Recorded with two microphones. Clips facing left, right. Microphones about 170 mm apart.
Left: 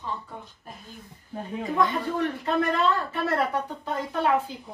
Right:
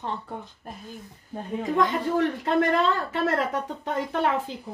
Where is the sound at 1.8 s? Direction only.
90° right.